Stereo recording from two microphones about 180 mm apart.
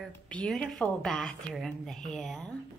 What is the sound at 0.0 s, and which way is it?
A woman's voice, 5° left (ahead or behind).